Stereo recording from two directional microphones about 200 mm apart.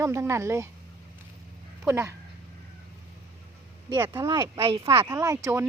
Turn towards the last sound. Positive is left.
turn(degrees=-15)  # may be behind; listen again after turning